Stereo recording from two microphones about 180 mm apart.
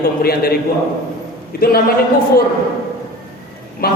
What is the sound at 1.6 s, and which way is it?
Speech, 55° left (ahead or behind).